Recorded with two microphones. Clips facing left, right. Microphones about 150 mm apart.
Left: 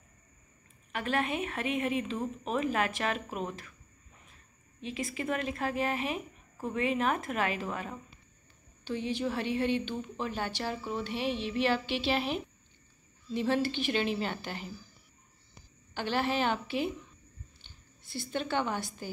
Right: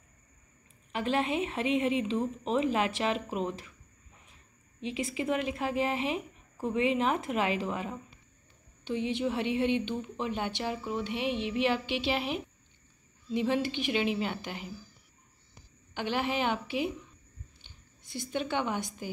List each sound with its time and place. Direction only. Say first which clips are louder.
0.9 s speech: right 2 dB; 25° right (ahead or behind)
4.7 s speech: right 3 dB; 20° right (ahead or behind)
15.9 s speech: even; 15° right (ahead or behind)